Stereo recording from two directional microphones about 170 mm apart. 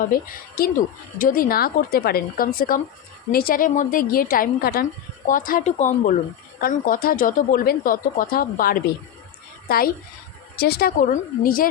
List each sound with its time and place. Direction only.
0.0 s a woman's voice: 60° left (ahead or behind)